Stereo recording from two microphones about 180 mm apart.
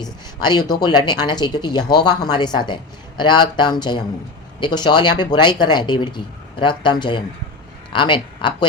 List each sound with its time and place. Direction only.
0.0 s speech: 25° left (ahead or behind)